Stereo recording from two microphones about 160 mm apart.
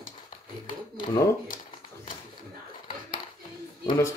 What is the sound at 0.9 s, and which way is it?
Speech, 30° left (ahead or behind).